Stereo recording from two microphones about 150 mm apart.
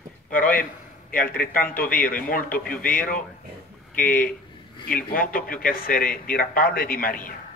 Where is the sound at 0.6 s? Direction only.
70° left (ahead or behind).